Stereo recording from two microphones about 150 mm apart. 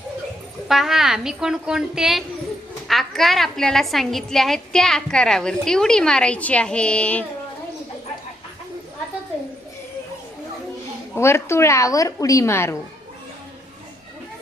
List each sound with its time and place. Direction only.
0.7 s a woman's voice: centre (ahead or behind)
11.1 s a woman's voice: 15° left (ahead or behind)